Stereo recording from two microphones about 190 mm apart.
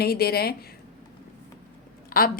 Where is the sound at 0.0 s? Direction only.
55° left (ahead or behind).